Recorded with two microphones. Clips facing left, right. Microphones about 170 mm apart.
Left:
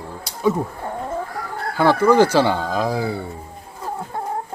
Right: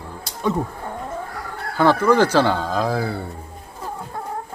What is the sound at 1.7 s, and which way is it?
Speech, 15° left (ahead or behind).